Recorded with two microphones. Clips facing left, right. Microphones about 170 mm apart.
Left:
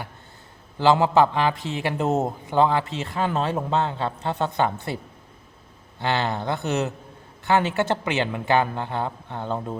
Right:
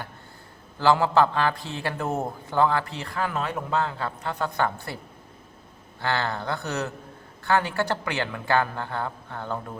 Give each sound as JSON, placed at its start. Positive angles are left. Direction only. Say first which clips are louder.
{"t": 0.8, "sound": "a man's voice", "louder": "left 2 dB", "side_deg": 20}
{"t": 6.0, "sound": "a man's voice", "louder": "left 3 dB", "side_deg": 20}